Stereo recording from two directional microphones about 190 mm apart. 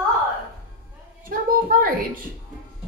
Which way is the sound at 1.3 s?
45° right (ahead or behind).